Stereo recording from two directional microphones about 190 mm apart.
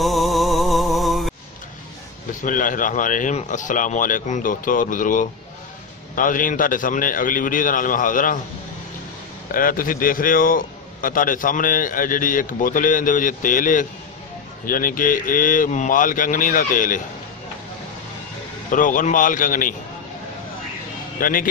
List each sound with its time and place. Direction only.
0.0 s music: centre (ahead or behind)
2.4 s a man's voice: 45° left (ahead or behind)
9.5 s a man's voice: 45° left (ahead or behind)
18.7 s a man's voice: 45° left (ahead or behind)
21.2 s a man's voice: 50° left (ahead or behind)